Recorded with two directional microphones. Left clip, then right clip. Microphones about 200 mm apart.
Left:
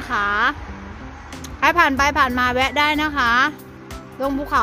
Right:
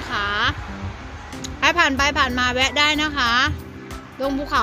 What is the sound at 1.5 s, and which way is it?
A woman's voice, 15° left (ahead or behind).